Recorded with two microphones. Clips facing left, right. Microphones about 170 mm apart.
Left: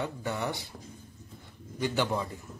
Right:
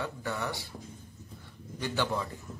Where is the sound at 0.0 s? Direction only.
20° left (ahead or behind).